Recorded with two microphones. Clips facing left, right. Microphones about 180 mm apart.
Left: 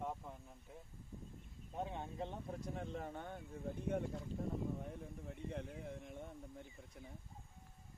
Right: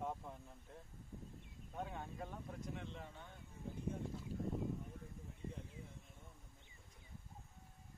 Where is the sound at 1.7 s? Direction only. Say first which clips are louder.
Left 3 dB; 25° left (ahead or behind).